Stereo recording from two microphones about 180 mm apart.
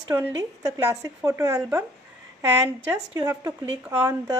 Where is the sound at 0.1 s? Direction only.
20° right (ahead or behind).